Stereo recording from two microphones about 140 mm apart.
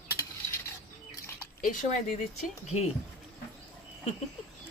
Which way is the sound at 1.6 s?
70° left (ahead or behind).